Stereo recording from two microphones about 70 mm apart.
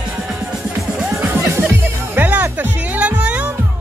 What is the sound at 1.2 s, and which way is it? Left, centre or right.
Music, right.